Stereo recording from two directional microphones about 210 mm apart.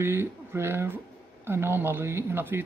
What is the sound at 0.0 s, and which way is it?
Speech, 10° right (ahead or behind).